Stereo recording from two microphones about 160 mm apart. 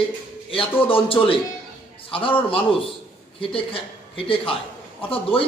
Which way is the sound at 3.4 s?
35° left (ahead or behind).